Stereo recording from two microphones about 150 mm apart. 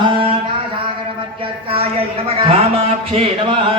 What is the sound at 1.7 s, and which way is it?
Music, 40° right (ahead or behind).